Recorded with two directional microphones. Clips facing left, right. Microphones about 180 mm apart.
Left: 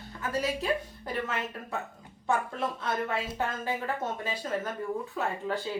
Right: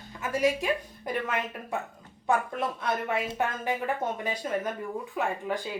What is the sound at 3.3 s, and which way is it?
A woman's voice, 15° right (ahead or behind).